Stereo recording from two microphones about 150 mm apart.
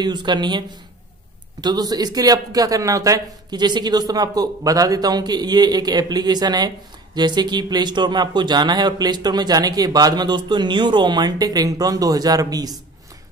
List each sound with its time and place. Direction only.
0.0 s speech: 30° right (ahead or behind)